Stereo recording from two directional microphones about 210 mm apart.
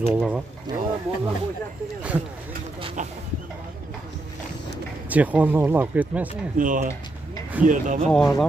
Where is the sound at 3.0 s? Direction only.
35° right (ahead or behind).